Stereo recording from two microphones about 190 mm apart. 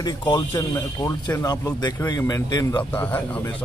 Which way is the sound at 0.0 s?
25° left (ahead or behind).